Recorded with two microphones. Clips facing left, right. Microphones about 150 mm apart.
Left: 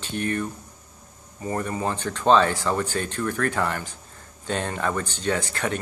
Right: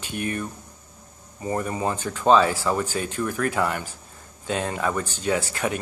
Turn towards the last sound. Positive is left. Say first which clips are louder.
# right 1 dB
turn(degrees=-10)  # may be behind; listen again after turning